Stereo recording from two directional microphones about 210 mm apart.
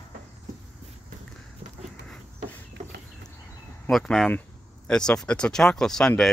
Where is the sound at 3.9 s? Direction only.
Centre (ahead or behind).